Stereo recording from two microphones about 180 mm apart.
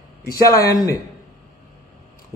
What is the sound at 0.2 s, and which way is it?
Speech, 20° left (ahead or behind).